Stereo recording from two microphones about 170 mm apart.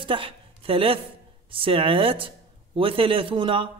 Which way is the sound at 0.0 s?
30° right (ahead or behind).